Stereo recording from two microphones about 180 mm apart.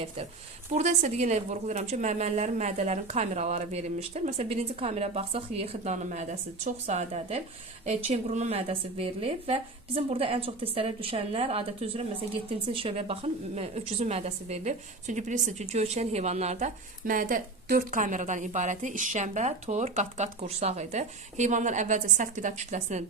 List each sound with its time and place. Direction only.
0.7 s a woman's voice: 40° right (ahead or behind)